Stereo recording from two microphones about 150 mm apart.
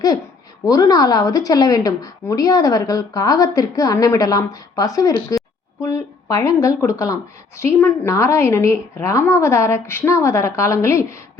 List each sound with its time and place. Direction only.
0.6 s a woman's voice: 25° left (ahead or behind)